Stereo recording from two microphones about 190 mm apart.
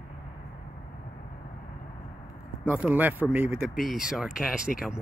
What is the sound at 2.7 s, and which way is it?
Speech, 5° right (ahead or behind).